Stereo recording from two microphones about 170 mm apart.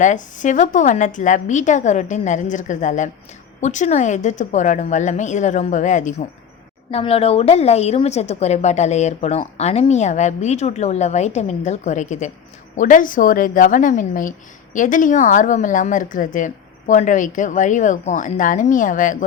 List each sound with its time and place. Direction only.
0.0 s speech: 45° left (ahead or behind)
6.9 s a woman's voice: 35° left (ahead or behind)